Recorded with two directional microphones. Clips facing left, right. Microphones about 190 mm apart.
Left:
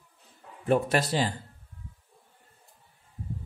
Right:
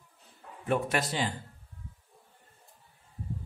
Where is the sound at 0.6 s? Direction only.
35° left (ahead or behind).